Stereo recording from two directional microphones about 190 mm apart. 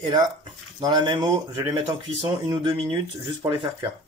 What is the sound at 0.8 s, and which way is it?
Speech, 25° right (ahead or behind).